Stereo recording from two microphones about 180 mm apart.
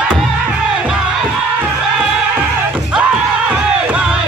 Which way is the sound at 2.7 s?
5° right (ahead or behind).